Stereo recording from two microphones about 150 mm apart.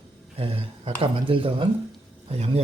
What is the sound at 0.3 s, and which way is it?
Speech, 40° right (ahead or behind).